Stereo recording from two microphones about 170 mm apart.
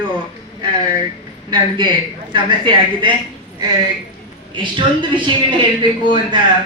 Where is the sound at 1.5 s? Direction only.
30° right (ahead or behind).